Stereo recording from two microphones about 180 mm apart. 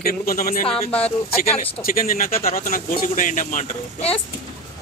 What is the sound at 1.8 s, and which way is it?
Speech, 50° left (ahead or behind).